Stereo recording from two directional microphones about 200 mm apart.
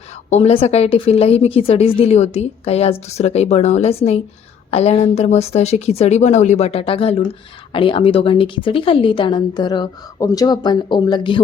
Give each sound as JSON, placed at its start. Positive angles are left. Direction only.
{"t": 0.3, "sound": "a woman's voice", "side_deg": 30}